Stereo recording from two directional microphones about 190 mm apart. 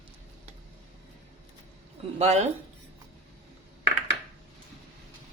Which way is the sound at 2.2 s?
35° right (ahead or behind).